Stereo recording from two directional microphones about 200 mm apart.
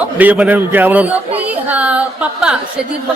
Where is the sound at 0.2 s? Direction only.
10° right (ahead or behind).